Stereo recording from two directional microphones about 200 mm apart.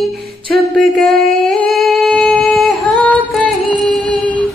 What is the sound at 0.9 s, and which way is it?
Singing, centre (ahead or behind).